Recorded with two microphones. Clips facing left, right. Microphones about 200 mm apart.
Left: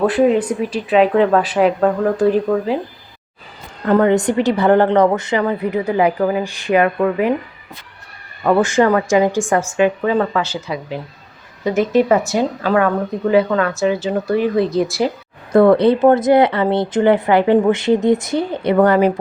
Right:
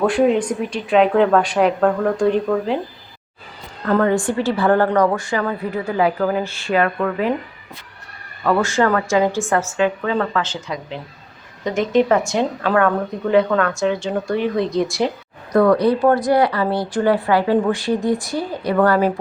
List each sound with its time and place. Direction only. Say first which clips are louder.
0.0 s speech: left 2 dB; centre (ahead or behind)
3.8 s a woman's voice: left 4 dB; 20° left (ahead or behind)
8.4 s a woman's voice: left 3 dB; 20° left (ahead or behind); by 15.1 s 5° left (ahead or behind)
15.5 s speech: left 4 dB; 25° left (ahead or behind)